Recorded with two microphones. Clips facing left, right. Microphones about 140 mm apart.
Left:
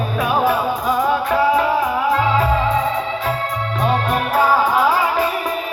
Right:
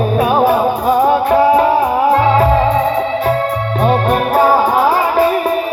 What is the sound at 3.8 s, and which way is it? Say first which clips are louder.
Music: right 6 dB; 35° right (ahead or behind).